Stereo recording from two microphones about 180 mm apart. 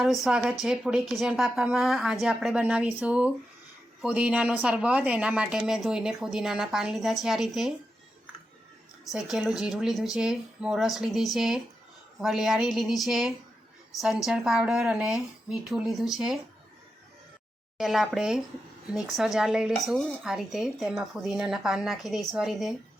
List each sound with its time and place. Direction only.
0.0 s speech: centre (ahead or behind)
9.0 s speech: centre (ahead or behind)
17.7 s speech: centre (ahead or behind)